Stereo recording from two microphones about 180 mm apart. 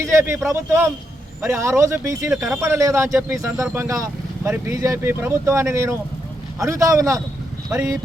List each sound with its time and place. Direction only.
0.0 s speech: 15° right (ahead or behind)
2.3 s speech: centre (ahead or behind)
2.6 s speech: 15° right (ahead or behind)